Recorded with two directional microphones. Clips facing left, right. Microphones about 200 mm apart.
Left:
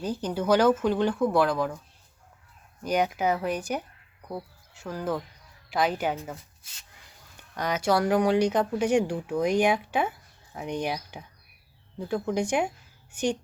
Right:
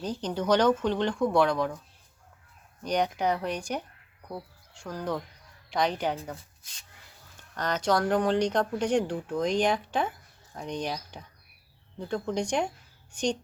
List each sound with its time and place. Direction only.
0.0 s speech: 5° left (ahead or behind)
2.8 s speech: 5° left (ahead or behind)
7.3 s speech: 10° left (ahead or behind)